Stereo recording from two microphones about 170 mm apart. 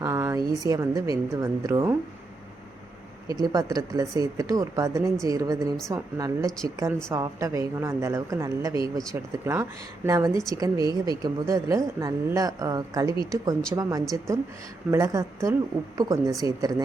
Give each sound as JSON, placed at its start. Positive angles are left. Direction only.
{"t": 0.0, "sound": "a woman's voice", "side_deg": -15}
{"t": 3.2, "sound": "a woman's voice", "side_deg": -20}
{"t": 14.8, "sound": "a woman's voice", "side_deg": -20}